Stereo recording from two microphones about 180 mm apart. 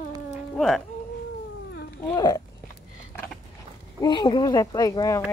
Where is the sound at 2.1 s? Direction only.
20° left (ahead or behind).